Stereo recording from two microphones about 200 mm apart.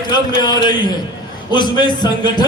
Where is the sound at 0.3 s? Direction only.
20° left (ahead or behind).